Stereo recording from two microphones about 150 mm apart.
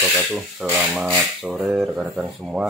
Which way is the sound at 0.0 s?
Centre (ahead or behind).